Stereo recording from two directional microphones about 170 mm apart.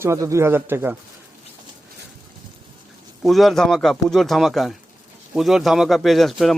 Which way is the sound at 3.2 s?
Centre (ahead or behind).